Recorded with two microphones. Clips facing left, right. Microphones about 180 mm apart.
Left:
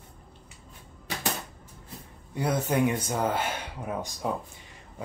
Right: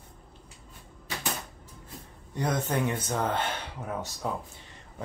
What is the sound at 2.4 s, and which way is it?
Speech, 10° left (ahead or behind).